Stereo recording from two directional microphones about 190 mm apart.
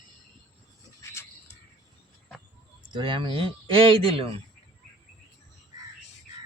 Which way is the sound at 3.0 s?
25° right (ahead or behind).